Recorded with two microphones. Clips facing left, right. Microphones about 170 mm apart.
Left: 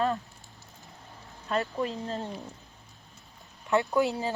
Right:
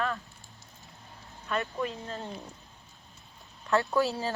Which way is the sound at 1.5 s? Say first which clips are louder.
Left 2 dB; 30° left (ahead or behind).